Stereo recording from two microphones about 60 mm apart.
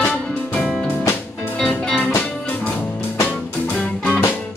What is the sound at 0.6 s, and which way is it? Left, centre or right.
Music, centre.